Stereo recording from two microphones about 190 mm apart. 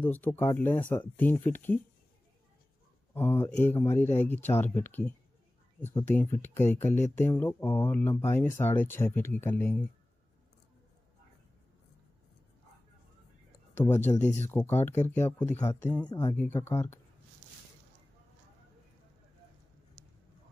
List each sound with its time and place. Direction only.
0.0 s speech: 10° left (ahead or behind)
3.2 s speech: 10° left (ahead or behind)
14.0 s speech: 40° left (ahead or behind)
14.4 s speech: 10° left (ahead or behind)